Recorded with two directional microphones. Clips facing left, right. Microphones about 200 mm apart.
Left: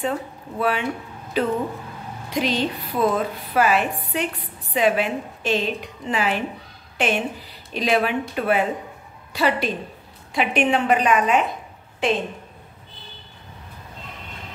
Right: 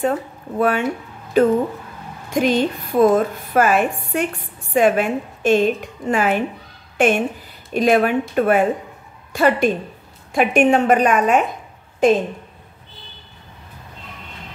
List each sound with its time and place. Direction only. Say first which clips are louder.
0.6 s a woman's voice: right 5 dB; 50° right (ahead or behind)